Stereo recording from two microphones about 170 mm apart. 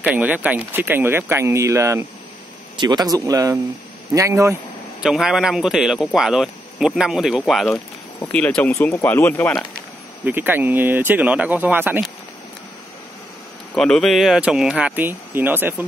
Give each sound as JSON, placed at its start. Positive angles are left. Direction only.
{"t": 0.0, "sound": "speech", "side_deg": -10}
{"t": 5.0, "sound": "speech", "side_deg": 0}
{"t": 7.7, "sound": "speech", "side_deg": 10}
{"t": 10.2, "sound": "speech", "side_deg": -10}
{"t": 13.7, "sound": "speech", "side_deg": 5}